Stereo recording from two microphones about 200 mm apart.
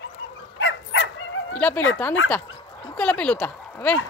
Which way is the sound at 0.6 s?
60° left (ahead or behind).